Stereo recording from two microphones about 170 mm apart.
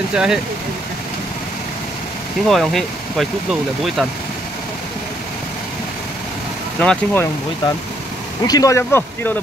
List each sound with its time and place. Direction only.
0.1 s speech: 5° right (ahead or behind)
2.4 s speech: centre (ahead or behind)
6.8 s speech: 5° left (ahead or behind)
8.5 s speech: 20° left (ahead or behind)